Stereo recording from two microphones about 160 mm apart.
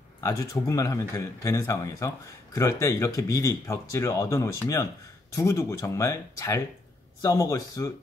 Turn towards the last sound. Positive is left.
turn(degrees=20)  # may be behind; listen again after turning